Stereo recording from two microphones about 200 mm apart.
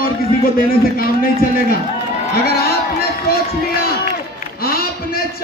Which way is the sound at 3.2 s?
50° left (ahead or behind).